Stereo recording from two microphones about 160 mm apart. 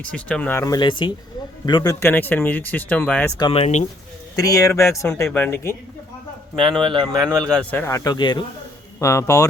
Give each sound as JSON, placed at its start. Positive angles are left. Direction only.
{"t": 0.0, "sound": "speech", "side_deg": 5}
{"t": 3.3, "sound": "speech", "side_deg": 25}
{"t": 3.6, "sound": "speech", "side_deg": 45}
{"t": 4.4, "sound": "speech", "side_deg": 20}
{"t": 6.6, "sound": "speech", "side_deg": -30}
{"t": 7.4, "sound": "speech", "side_deg": 5}